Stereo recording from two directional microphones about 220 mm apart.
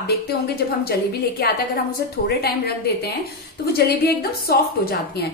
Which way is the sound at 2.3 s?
45° left (ahead or behind).